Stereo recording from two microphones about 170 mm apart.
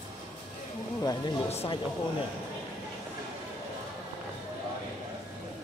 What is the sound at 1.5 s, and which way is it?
Speech, 35° left (ahead or behind).